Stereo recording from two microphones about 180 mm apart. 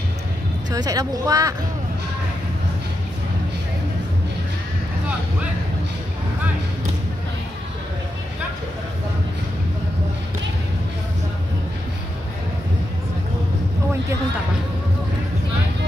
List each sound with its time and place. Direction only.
0.7 s speech: 20° right (ahead or behind)